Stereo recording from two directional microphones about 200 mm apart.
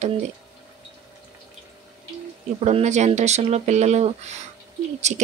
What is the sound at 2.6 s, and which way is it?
Speech, 35° right (ahead or behind).